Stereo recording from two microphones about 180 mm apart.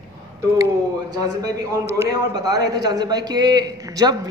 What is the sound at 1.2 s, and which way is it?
A man's voice, 20° right (ahead or behind).